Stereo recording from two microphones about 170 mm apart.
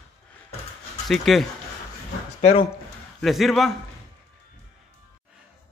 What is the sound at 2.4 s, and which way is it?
Speech, 40° left (ahead or behind).